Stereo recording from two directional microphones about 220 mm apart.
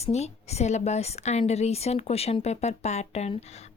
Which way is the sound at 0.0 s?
30° left (ahead or behind).